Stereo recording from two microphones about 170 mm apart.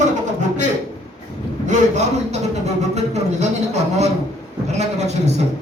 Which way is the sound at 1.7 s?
40° right (ahead or behind).